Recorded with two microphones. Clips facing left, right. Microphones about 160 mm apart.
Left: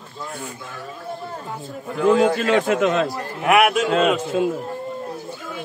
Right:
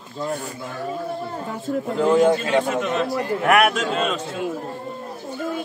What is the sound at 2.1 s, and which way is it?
Speech, 90° left.